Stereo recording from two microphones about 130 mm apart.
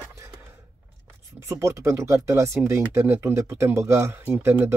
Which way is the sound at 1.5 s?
20° right (ahead or behind).